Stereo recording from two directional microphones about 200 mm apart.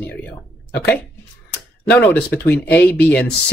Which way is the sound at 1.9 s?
10° left (ahead or behind).